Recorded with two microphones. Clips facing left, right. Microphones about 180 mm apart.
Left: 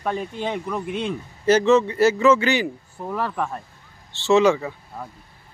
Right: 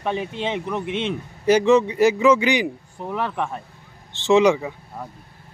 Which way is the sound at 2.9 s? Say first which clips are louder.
Even; centre (ahead or behind).